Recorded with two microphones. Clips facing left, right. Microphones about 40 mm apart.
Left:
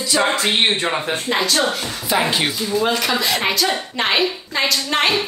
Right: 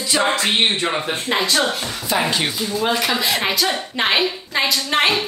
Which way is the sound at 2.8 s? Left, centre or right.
Centre.